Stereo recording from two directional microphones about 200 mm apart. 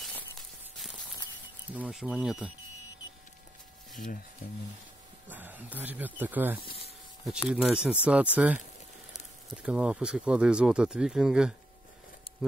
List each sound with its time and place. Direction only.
0.7 s a sound: centre (ahead or behind)
1.8 s speech: 5° right (ahead or behind)
3.9 s speech: 40° left (ahead or behind)
5.3 s speech: 10° right (ahead or behind)
6.6 s speech: 25° left (ahead or behind)
7.4 s speech: 5° right (ahead or behind)
9.6 s speech: 5° right (ahead or behind)
12.3 s a sound: 30° left (ahead or behind)